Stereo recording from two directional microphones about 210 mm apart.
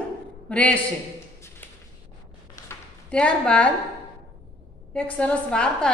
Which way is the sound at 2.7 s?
5° left (ahead or behind).